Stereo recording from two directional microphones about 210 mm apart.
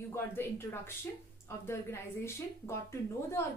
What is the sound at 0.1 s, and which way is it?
A woman's voice, 10° left (ahead or behind).